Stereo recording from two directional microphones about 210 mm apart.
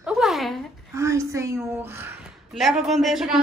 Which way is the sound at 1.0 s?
15° right (ahead or behind).